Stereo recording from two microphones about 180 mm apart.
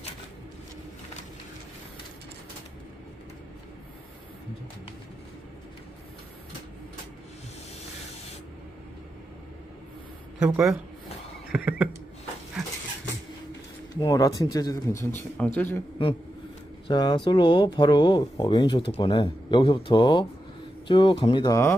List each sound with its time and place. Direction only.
10.4 s speech: 5° right (ahead or behind)
11.5 s a sound: 5° right (ahead or behind)
13.9 s speech: 20° left (ahead or behind)
16.8 s speech: 25° left (ahead or behind)